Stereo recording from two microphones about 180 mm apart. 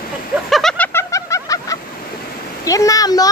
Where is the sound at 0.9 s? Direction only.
15° left (ahead or behind).